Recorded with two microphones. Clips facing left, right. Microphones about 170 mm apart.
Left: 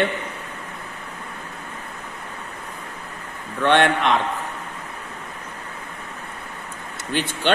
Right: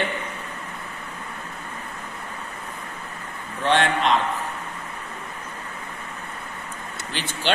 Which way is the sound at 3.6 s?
60° left (ahead or behind).